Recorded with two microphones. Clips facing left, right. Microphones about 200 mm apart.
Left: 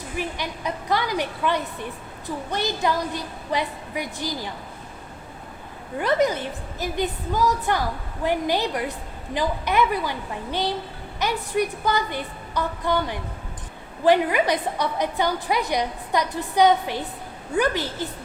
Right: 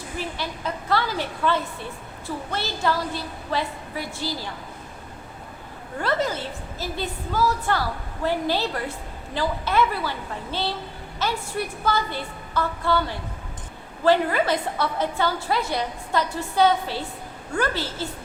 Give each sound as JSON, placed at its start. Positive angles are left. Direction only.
{"t": 0.2, "sound": "a woman's voice", "side_deg": 15}
{"t": 6.0, "sound": "a woman's voice", "side_deg": 15}